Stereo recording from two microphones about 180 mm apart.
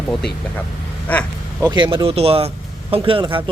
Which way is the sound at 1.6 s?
25° right (ahead or behind).